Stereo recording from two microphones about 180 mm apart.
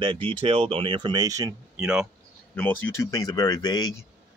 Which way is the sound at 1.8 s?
5° right (ahead or behind).